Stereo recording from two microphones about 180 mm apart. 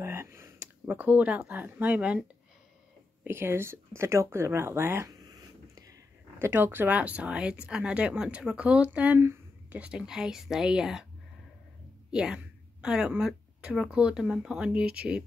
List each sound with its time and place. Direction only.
0.0 s speech: 15° right (ahead or behind)
3.3 s speech: 15° right (ahead or behind)
12.1 s speech: 5° right (ahead or behind)